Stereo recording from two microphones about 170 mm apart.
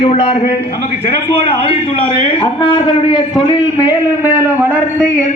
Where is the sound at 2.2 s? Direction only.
30° left (ahead or behind).